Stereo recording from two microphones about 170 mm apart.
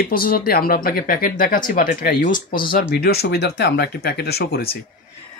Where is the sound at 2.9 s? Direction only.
70° left (ahead or behind).